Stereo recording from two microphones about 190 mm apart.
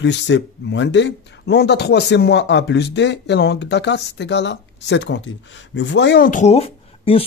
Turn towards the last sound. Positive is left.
turn(degrees=30)  # may be behind; listen again after turning